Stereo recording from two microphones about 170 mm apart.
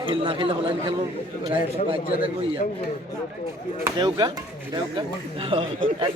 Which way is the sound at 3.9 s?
25° right (ahead or behind).